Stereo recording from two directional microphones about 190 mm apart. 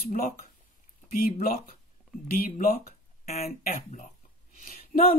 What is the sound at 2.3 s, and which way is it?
Speech, 45° left (ahead or behind).